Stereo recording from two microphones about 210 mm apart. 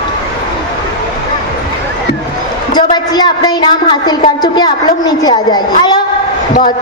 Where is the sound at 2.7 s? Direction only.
20° left (ahead or behind).